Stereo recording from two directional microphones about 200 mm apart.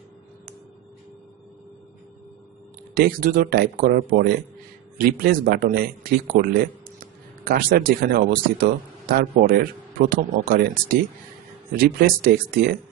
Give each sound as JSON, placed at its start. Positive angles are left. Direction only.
{"t": 2.9, "sound": "a man's voice", "side_deg": -45}